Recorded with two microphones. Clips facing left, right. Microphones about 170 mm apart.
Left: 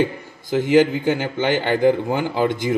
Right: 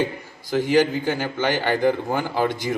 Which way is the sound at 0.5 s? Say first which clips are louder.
Left 3 dB; 20° left (ahead or behind).